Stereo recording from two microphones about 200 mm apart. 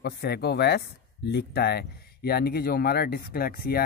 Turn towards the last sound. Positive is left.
turn(degrees=50)  # may be behind; listen again after turning